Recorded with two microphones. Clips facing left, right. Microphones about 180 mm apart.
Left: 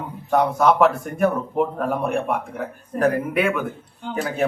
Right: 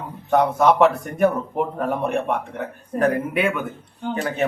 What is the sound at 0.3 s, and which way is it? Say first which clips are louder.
Speech: right 1 dB; centre (ahead or behind).